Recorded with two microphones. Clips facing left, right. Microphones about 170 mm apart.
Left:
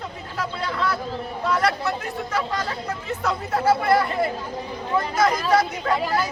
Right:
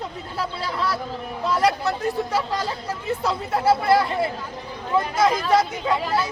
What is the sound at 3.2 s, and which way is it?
Speech, 30° right (ahead or behind).